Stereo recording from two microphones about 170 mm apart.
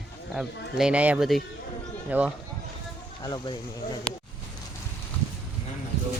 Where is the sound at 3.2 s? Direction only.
20° left (ahead or behind).